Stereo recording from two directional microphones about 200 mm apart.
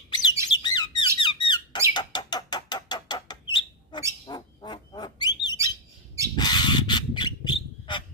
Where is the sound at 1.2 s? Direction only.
25° left (ahead or behind).